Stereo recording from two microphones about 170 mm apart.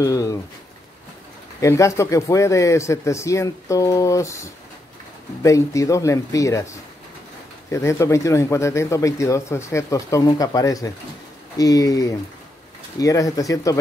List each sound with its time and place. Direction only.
0.0 s speech: 20° left (ahead or behind)
1.6 s speech: 15° left (ahead or behind)
7.7 s speech: 15° left (ahead or behind)